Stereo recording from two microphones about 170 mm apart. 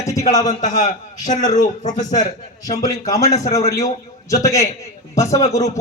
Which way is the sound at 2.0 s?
20° left (ahead or behind).